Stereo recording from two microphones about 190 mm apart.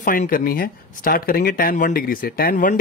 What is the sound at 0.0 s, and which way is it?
Speech, 50° left (ahead or behind).